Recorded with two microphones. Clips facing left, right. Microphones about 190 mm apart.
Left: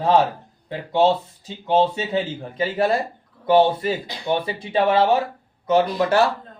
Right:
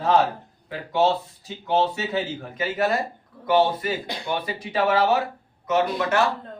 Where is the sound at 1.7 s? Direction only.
25° left (ahead or behind).